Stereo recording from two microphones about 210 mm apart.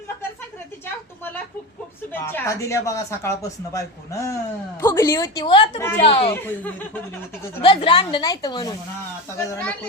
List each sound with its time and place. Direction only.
2.2 s a woman's voice: 15° left (ahead or behind)
6.3 s speech: 10° left (ahead or behind)
7.6 s a woman's voice: 25° left (ahead or behind)
9.5 s speech: 5° left (ahead or behind)